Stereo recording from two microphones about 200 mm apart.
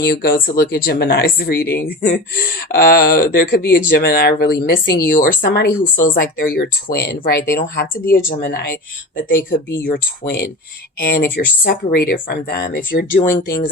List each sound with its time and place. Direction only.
0.0 s speech: 50° left (ahead or behind)
9.9 s speech: 50° left (ahead or behind)